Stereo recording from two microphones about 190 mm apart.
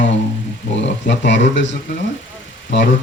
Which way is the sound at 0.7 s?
70° left (ahead or behind).